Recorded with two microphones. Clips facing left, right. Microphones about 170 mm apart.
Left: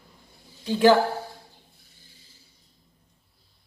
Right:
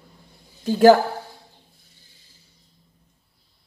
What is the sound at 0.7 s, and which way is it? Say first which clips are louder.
Speech: right 5 dB; 45° right (ahead or behind).